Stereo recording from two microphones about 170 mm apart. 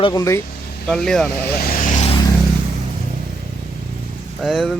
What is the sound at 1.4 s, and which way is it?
Vehicle, 65° left (ahead or behind).